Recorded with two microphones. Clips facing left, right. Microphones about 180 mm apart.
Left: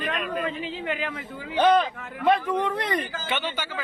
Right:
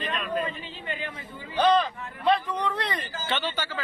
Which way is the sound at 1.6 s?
10° left (ahead or behind).